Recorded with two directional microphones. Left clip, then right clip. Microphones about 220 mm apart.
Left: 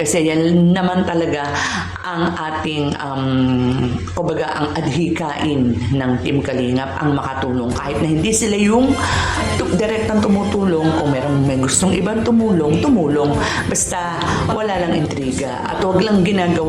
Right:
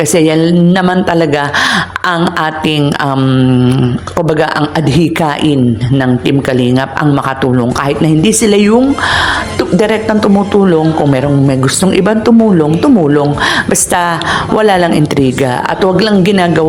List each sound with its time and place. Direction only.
0.1 s speech: 30° right (ahead or behind)
3.3 s mantra: 25° right (ahead or behind)
4.9 s speech: 35° right (ahead or behind)
8.0 s speech: 35° right (ahead or behind)